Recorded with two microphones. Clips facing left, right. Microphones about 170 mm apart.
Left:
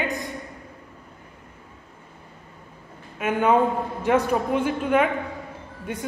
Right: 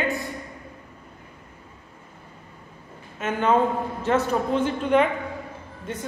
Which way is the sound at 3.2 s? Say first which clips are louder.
Left 1 dB; 10° left (ahead or behind).